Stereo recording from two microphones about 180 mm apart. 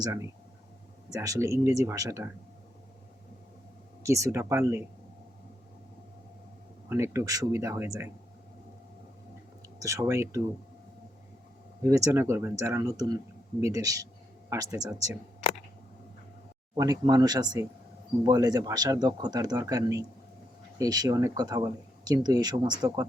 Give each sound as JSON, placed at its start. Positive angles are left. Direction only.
{"t": 0.0, "sound": "speech", "side_deg": -15}
{"t": 4.0, "sound": "speech", "side_deg": -15}
{"t": 6.8, "sound": "speech", "side_deg": -15}
{"t": 9.8, "sound": "speech", "side_deg": -15}
{"t": 11.8, "sound": "speech", "side_deg": -15}
{"t": 16.7, "sound": "speech", "side_deg": -20}